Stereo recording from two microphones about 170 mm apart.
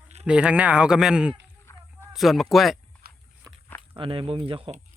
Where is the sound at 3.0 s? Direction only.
65° right (ahead or behind).